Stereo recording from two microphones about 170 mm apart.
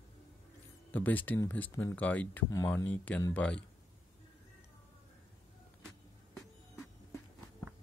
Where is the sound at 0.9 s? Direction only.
10° left (ahead or behind).